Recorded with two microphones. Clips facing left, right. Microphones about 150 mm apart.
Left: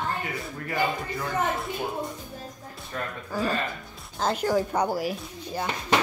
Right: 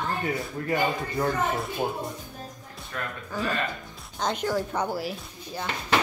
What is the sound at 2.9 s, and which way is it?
Speech, 30° left (ahead or behind).